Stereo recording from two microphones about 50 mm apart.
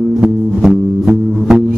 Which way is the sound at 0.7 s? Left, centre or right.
Centre.